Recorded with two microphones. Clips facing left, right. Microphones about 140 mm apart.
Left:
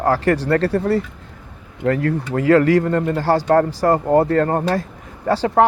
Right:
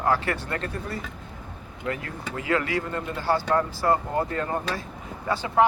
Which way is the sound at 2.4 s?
45° left (ahead or behind).